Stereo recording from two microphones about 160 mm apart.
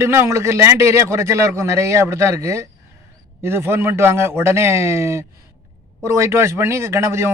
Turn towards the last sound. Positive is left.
turn(degrees=-15)  # may be behind; listen again after turning